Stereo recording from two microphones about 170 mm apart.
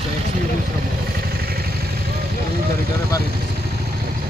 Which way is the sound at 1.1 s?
65° right (ahead or behind).